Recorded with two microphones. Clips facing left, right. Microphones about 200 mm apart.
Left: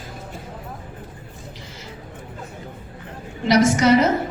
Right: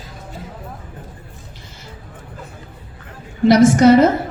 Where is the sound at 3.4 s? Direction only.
50° right (ahead or behind).